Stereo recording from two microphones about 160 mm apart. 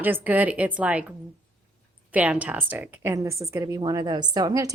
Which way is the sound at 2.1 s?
10° right (ahead or behind).